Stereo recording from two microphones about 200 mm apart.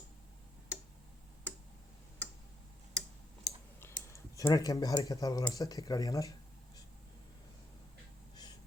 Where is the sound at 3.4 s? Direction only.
15° left (ahead or behind).